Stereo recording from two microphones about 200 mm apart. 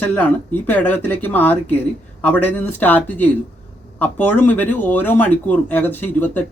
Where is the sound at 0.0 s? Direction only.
10° left (ahead or behind).